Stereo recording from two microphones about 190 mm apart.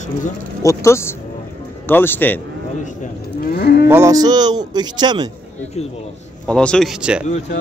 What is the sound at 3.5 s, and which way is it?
Moo, 55° left (ahead or behind).